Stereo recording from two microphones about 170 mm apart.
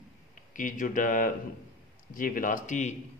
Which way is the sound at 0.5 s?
50° left (ahead or behind).